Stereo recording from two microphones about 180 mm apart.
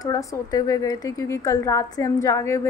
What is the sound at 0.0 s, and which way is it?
A woman's voice, 20° left (ahead or behind).